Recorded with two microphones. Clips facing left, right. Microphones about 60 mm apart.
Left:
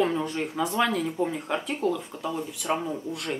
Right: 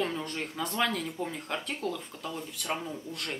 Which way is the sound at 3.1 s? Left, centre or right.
Centre.